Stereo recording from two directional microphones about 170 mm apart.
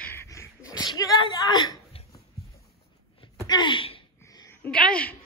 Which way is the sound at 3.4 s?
25° left (ahead or behind).